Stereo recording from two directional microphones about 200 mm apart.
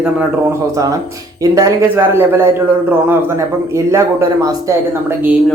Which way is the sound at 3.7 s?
15° right (ahead or behind).